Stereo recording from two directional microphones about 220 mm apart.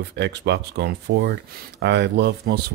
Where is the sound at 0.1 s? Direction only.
50° right (ahead or behind).